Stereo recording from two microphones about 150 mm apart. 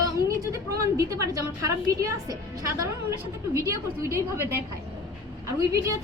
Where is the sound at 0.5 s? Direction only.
20° right (ahead or behind).